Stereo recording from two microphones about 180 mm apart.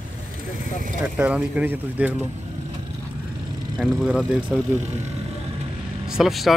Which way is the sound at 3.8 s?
5° left (ahead or behind).